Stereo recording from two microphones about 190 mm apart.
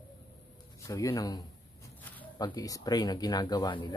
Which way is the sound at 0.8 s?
15° left (ahead or behind).